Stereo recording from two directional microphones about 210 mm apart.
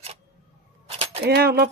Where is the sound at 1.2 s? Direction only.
50° right (ahead or behind).